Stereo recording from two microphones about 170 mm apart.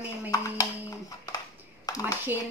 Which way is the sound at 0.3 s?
20° left (ahead or behind).